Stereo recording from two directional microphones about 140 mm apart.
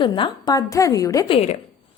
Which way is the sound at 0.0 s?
35° left (ahead or behind).